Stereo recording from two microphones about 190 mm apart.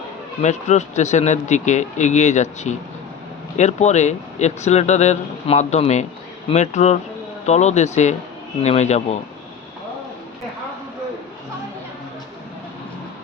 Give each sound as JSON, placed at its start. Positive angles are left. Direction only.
{"t": 0.4, "sound": "speech", "side_deg": 35}